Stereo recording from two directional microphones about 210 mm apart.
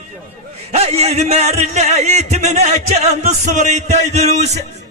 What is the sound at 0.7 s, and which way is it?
Speech, 30° right (ahead or behind).